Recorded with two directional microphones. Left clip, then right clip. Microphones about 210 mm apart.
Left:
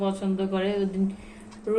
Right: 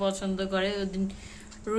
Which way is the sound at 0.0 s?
40° right (ahead or behind).